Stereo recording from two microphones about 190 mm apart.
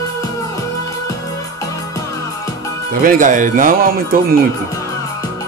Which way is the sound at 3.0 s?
45° right (ahead or behind).